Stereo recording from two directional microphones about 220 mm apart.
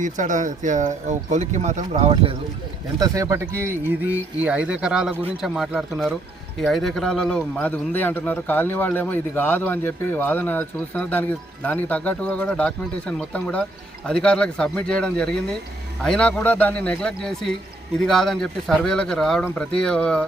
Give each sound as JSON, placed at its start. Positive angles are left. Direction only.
{"t": 0.0, "sound": "speech", "side_deg": -35}
{"t": 3.0, "sound": "a man's voice", "side_deg": -15}